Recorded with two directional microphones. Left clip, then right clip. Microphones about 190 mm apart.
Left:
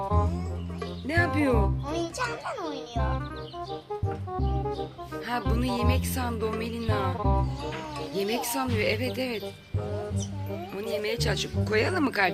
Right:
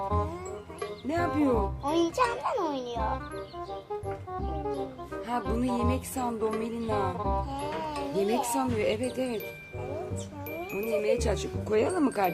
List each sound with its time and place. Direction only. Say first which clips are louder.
0.0 s music: left 1 dB; centre (ahead or behind)
2.4 s a child's voice: right 4 dB; 35° right (ahead or behind)
5.1 s music: left 1 dB; centre (ahead or behind)
10.8 s speech: right 3 dB; 10° right (ahead or behind)
12.0 s music: left 2 dB; 5° right (ahead or behind)